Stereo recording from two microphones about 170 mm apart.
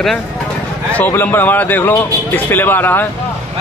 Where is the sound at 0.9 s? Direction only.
10° left (ahead or behind).